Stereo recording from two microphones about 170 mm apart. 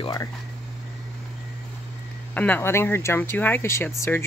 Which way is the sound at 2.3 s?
10° left (ahead or behind).